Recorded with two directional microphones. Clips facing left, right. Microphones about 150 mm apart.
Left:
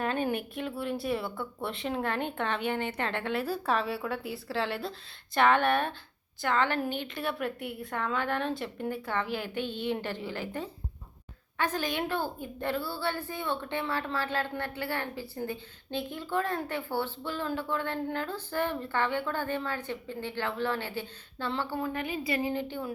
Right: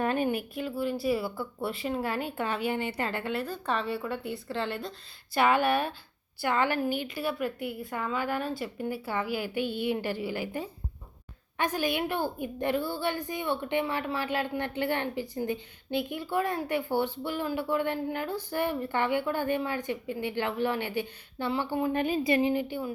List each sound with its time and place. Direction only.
0.0 s a woman's voice: 10° right (ahead or behind)
21.9 s speech: 30° right (ahead or behind)
22.3 s speech: 20° right (ahead or behind)